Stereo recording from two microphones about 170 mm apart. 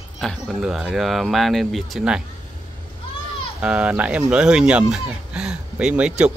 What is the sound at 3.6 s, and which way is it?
Speech, 5° right (ahead or behind).